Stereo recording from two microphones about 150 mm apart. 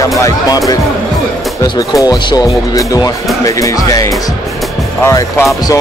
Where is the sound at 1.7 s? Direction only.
25° left (ahead or behind).